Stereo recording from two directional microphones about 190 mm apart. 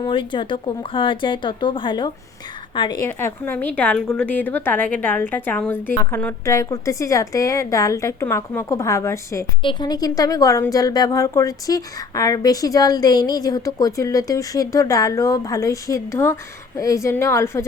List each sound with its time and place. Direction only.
0.0 s a woman's voice: 25° left (ahead or behind)
3.1 s a woman's voice: 10° left (ahead or behind)